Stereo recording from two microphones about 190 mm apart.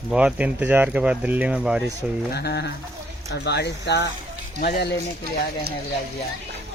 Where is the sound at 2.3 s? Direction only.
60° left (ahead or behind).